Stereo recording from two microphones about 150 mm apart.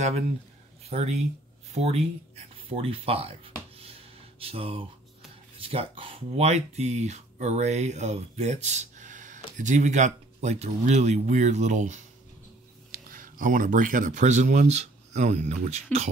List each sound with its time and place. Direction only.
0.8 s speech: 45° right (ahead or behind)
1.7 s a sound: 45° right (ahead or behind)
5.6 s speech: 40° right (ahead or behind)
12.9 s speech: 70° right (ahead or behind); by 16.1 s 45° right (ahead or behind)